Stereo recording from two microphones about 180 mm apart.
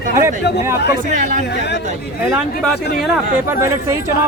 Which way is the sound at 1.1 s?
45° right (ahead or behind).